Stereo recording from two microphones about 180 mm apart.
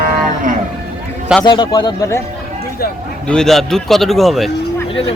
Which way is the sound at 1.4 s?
25° left (ahead or behind).